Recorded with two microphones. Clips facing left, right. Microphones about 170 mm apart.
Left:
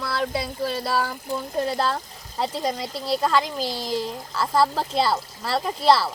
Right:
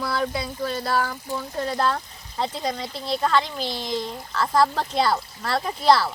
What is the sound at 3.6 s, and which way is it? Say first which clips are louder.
Speech: left 1 dB; 35° left (ahead or behind).